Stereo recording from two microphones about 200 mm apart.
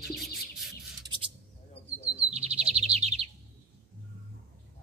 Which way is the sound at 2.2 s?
30° right (ahead or behind).